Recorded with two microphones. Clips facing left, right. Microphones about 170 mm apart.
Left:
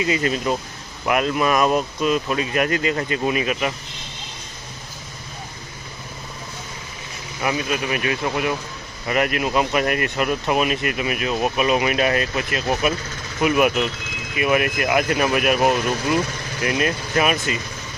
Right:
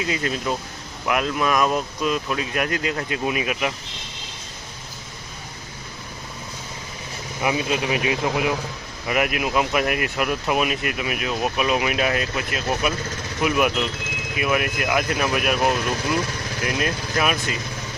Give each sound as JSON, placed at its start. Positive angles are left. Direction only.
{"t": 0.0, "sound": "speech", "side_deg": 0}
{"t": 7.4, "sound": "speech", "side_deg": -20}